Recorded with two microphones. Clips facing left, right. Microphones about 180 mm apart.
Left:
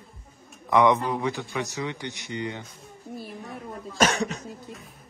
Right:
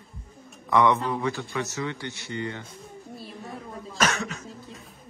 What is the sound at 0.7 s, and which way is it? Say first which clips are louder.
Speech: left 1 dB; 15° left (ahead or behind).